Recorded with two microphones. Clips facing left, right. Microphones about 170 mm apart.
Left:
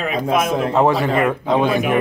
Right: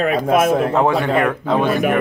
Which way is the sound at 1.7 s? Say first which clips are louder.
Right 1 dB; 45° right (ahead or behind).